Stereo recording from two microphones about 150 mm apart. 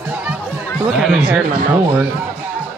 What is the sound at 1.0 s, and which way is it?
Speech, 5° right (ahead or behind).